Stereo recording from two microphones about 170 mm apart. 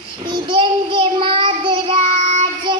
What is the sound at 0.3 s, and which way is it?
Child singing, 30° right (ahead or behind).